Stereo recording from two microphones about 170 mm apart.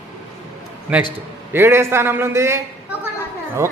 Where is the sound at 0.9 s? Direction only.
5° right (ahead or behind).